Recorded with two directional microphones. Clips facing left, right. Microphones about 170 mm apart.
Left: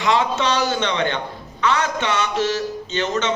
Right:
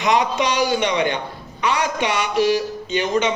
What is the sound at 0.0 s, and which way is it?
A man's voice, 20° right (ahead or behind).